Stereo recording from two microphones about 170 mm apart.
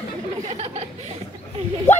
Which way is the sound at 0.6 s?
35° right (ahead or behind).